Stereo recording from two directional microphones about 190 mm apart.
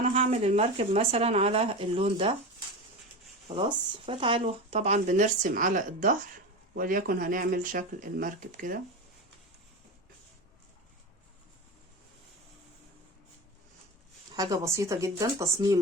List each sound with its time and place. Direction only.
0.0 s speech: 35° right (ahead or behind)
3.5 s speech: 30° right (ahead or behind); by 8.8 s 45° right (ahead or behind)
14.3 s speech: 20° right (ahead or behind)